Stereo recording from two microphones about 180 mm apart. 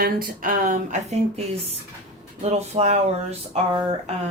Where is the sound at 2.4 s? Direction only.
35° right (ahead or behind).